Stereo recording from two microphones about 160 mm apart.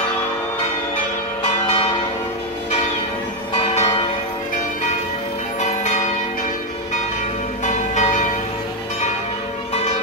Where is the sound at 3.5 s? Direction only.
40° left (ahead or behind).